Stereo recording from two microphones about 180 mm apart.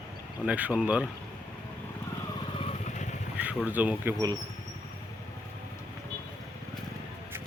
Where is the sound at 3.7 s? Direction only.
10° right (ahead or behind).